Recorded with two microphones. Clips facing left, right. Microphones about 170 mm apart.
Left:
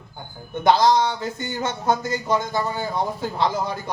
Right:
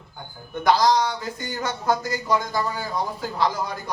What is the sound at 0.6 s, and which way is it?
Speech, 25° left (ahead or behind).